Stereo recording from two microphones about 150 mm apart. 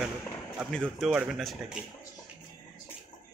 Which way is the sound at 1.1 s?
10° right (ahead or behind).